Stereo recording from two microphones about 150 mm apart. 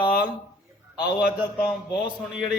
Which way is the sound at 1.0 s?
10° right (ahead or behind).